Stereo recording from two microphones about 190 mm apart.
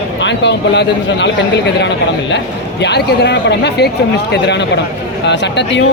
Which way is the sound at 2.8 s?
60° left (ahead or behind).